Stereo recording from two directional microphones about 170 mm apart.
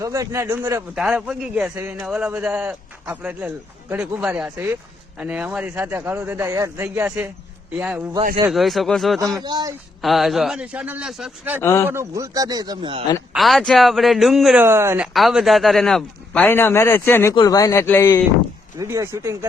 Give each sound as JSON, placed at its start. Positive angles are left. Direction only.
{"t": 0.0, "sound": "a man's voice", "side_deg": -20}
{"t": 9.4, "sound": "a man's voice", "side_deg": -25}
{"t": 10.0, "sound": "a man's voice", "side_deg": 0}
{"t": 11.6, "sound": "a man's voice", "side_deg": 15}
{"t": 11.9, "sound": "a man's voice", "side_deg": -15}
{"t": 13.3, "sound": "a man's voice", "side_deg": 0}
{"t": 14.6, "sound": "speech", "side_deg": -15}
{"t": 15.0, "sound": "a man's voice", "side_deg": 0}
{"t": 18.8, "sound": "speech", "side_deg": -20}